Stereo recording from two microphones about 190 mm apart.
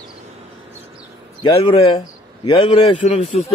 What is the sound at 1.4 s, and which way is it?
A man's voice, 30° left (ahead or behind).